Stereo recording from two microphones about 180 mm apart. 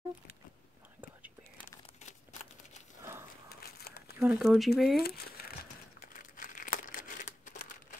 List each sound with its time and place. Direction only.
3.0 s horse: 15° right (ahead or behind)
3.4 s a sound: 60° left (ahead or behind)
4.2 s speech: 5° right (ahead or behind)
4.9 s speech: 60° left (ahead or behind)
6.3 s crumpling: 50° left (ahead or behind)